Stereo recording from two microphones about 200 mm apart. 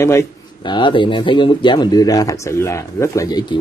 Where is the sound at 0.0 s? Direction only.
15° left (ahead or behind).